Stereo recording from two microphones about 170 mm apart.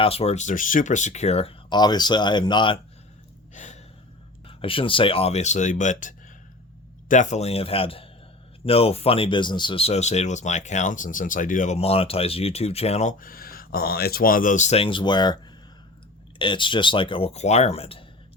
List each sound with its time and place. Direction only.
0.0 s speech: 35° left (ahead or behind)
3.5 s gasp: 45° left (ahead or behind)
4.4 s speech: 30° left (ahead or behind)
16.4 s speech: 30° left (ahead or behind)